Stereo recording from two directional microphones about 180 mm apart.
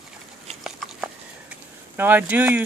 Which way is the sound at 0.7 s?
5° right (ahead or behind).